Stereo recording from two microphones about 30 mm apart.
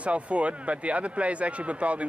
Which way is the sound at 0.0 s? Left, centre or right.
Right.